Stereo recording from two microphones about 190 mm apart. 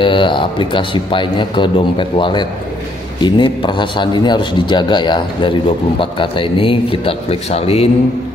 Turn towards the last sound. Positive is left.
turn(degrees=30)  # may be behind; listen again after turning